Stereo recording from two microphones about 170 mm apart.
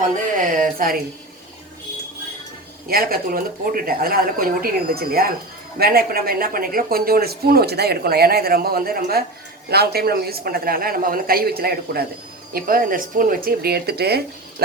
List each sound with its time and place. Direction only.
0.0 s speech: 55° right (ahead or behind)
2.8 s speech: 60° right (ahead or behind)